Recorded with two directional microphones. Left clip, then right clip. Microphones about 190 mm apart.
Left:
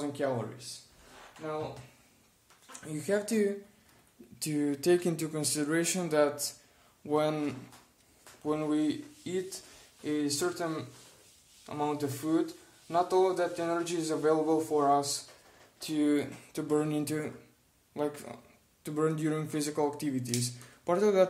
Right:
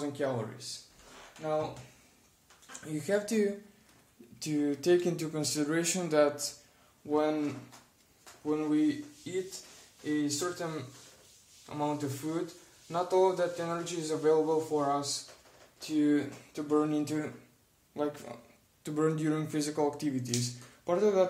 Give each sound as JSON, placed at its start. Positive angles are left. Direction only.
{"t": 0.0, "sound": "a sound", "side_deg": 25}
{"t": 2.8, "sound": "speech", "side_deg": 15}
{"t": 7.1, "sound": "speech", "side_deg": 45}
{"t": 8.5, "sound": "speech", "side_deg": 50}
{"t": 11.7, "sound": "speech", "side_deg": 45}
{"t": 18.9, "sound": "speech", "side_deg": 5}